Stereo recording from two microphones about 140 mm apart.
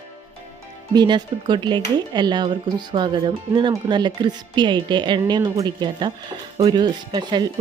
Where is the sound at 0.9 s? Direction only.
30° right (ahead or behind).